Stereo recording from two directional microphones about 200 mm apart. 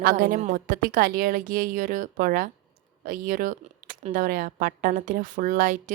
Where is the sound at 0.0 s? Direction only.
45° right (ahead or behind).